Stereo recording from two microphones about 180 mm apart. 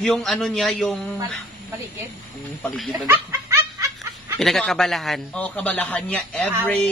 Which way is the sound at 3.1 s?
15° right (ahead or behind).